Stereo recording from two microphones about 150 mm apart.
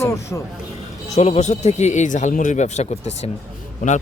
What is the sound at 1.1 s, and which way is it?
A man's voice, 50° left (ahead or behind).